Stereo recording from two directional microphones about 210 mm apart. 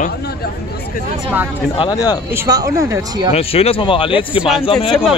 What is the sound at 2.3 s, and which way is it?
Speech, 15° right (ahead or behind).